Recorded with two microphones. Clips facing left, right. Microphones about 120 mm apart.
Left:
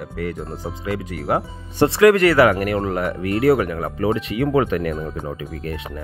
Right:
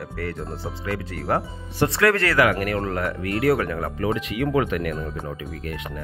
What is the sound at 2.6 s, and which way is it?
Speech, 25° left (ahead or behind).